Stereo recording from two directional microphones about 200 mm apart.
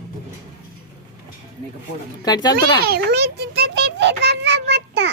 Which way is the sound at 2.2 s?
20° left (ahead or behind).